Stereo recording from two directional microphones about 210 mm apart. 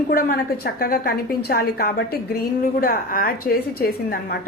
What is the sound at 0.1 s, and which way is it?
Speech, 45° left (ahead or behind).